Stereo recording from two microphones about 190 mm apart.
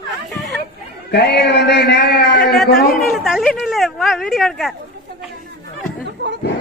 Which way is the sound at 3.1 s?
Centre (ahead or behind).